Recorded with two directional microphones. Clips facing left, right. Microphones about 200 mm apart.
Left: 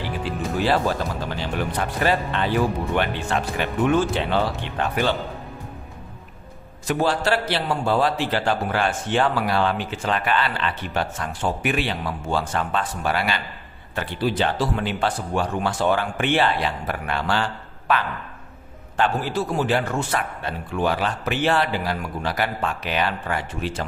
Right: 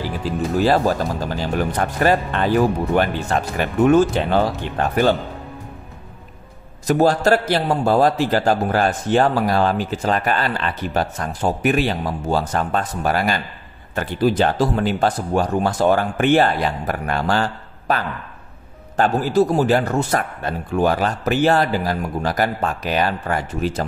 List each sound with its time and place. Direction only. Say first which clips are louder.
0.6 s speech: right 4 dB; 40° right (ahead or behind)
6.9 s a man's voice: right 6 dB; 40° right (ahead or behind)